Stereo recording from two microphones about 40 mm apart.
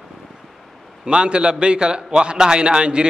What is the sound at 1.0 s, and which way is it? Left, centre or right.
A man's voice, right.